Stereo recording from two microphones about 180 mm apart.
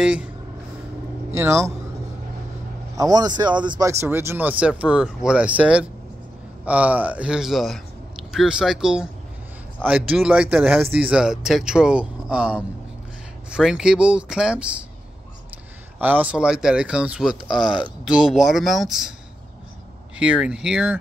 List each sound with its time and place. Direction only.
0.0 s speech: 5° right (ahead or behind)
1.3 s speech: 15° right (ahead or behind)
3.0 s a man's voice: 20° right (ahead or behind); by 14.9 s 5° right (ahead or behind)
16.0 s speech: 10° right (ahead or behind)
20.2 s speech: 5° right (ahead or behind)